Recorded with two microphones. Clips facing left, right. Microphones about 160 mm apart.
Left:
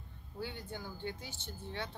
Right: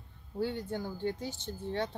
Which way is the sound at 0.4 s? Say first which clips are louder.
Right 9 dB; 40° right (ahead or behind).